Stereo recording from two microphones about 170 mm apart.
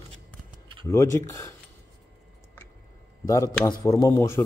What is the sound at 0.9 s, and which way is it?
Speech, 15° left (ahead or behind).